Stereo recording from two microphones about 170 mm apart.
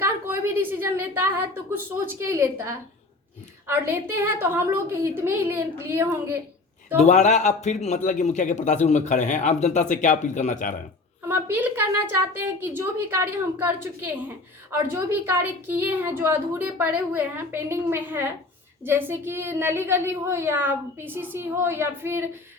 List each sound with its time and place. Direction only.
0.0 s a sound: 15° right (ahead or behind)
2.0 s a woman's voice: 15° right (ahead or behind)
7.0 s a man's voice: 45° left (ahead or behind)
11.3 s a woman's voice: 10° right (ahead or behind)